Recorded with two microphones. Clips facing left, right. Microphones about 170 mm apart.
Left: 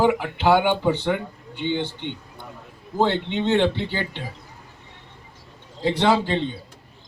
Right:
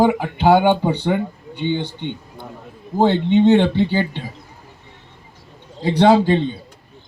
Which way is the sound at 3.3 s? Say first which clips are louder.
Right 8 dB; 50° right (ahead or behind).